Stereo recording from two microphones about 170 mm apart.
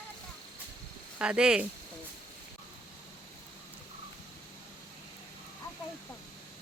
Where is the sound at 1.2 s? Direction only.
5° right (ahead or behind).